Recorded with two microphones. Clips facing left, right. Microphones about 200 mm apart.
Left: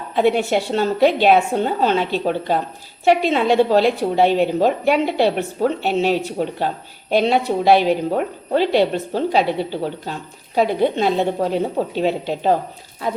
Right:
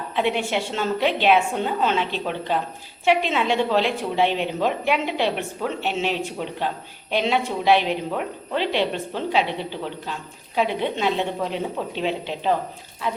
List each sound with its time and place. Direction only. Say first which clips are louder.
0.2 s a woman's voice: left 6 dB; 40° left (ahead or behind)